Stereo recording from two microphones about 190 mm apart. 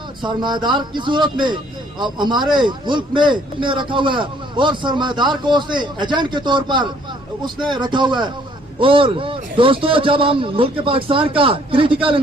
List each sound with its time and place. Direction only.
0.2 s speech: 25° right (ahead or behind)